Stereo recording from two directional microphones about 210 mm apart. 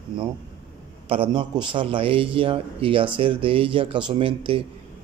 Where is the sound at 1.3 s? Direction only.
20° right (ahead or behind).